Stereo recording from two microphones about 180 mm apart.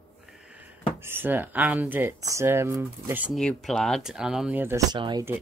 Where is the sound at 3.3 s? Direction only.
5° left (ahead or behind).